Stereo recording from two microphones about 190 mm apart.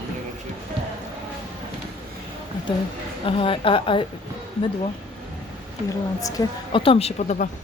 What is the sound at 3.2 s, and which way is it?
Speech, 30° left (ahead or behind).